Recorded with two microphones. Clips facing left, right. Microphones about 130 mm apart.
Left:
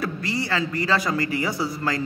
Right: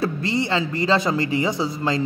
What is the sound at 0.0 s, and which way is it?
Speech, 25° right (ahead or behind).